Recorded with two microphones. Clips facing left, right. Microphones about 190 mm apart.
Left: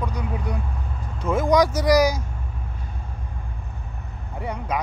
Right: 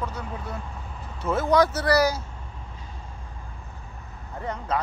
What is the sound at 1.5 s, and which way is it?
Speech, 15° left (ahead or behind).